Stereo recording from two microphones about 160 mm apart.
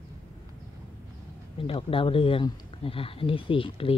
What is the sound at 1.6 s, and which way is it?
Speech, 35° left (ahead or behind).